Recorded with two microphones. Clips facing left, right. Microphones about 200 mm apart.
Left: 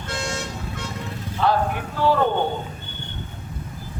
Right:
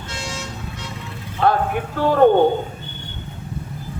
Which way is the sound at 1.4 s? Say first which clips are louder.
Right 3 dB; 50° right (ahead or behind).